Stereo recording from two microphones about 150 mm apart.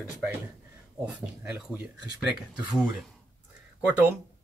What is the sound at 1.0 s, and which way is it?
Speech, 10° right (ahead or behind).